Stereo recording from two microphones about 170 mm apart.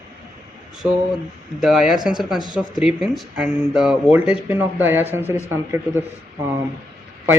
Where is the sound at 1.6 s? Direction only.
5° right (ahead or behind).